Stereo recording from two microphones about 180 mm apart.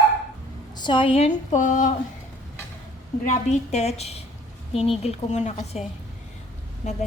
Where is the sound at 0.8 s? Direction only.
25° left (ahead or behind); by 1.9 s 45° left (ahead or behind).